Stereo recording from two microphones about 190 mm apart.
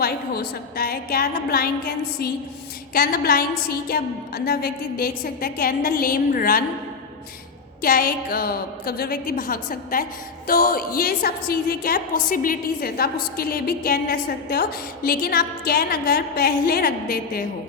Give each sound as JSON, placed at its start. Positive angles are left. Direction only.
{"t": 0.0, "sound": "a woman's voice", "side_deg": 55}
{"t": 2.9, "sound": "a woman's voice", "side_deg": 50}
{"t": 7.8, "sound": "a woman's voice", "side_deg": 50}